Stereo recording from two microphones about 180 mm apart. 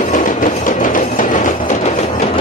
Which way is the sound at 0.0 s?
45° left (ahead or behind).